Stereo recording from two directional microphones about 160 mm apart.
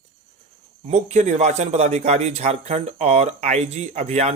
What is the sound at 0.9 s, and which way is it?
Speech, 45° right (ahead or behind).